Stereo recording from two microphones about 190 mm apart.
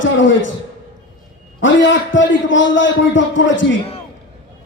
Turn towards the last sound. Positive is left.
turn(degrees=80)